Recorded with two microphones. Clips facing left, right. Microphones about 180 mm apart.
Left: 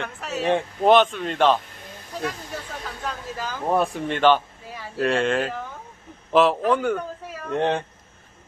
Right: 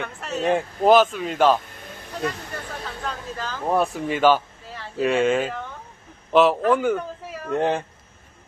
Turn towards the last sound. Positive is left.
turn(degrees=0)  # may be behind; listen again after turning